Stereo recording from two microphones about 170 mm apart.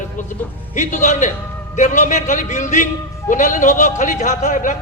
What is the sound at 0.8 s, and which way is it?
A man's voice, 45° left (ahead or behind).